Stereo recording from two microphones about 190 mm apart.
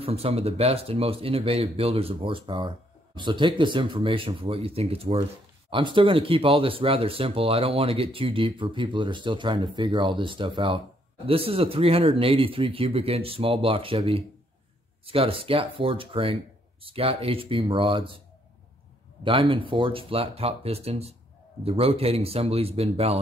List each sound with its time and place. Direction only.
0.0 s speech: 30° right (ahead or behind)
19.2 s speech: 25° right (ahead or behind)